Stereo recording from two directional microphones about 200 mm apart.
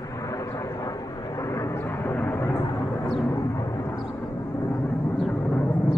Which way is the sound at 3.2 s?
15° left (ahead or behind).